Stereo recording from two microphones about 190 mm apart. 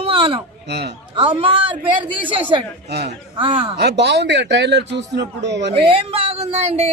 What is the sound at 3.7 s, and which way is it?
Speech, 65° right (ahead or behind).